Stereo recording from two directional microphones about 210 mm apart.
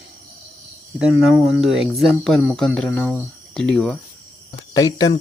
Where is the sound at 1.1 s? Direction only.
Centre (ahead or behind).